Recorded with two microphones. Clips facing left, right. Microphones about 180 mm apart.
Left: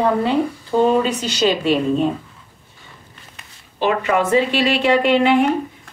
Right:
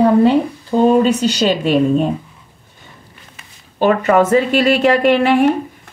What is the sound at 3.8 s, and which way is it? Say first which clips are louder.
A woman's voice: right 5 dB; 45° right (ahead or behind).